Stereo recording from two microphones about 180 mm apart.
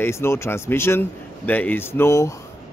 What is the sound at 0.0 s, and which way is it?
A man's voice, 15° left (ahead or behind).